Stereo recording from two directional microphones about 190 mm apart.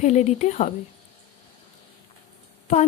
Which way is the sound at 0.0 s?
35° left (ahead or behind).